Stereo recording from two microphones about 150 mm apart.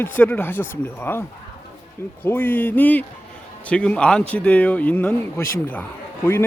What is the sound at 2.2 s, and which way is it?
Speech, 15° left (ahead or behind).